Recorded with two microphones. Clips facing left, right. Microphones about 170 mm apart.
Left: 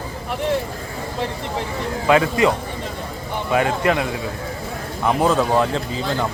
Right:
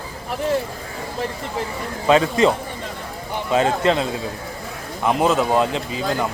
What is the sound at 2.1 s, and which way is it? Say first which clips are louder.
Speech: right 1 dB; 25° right (ahead or behind).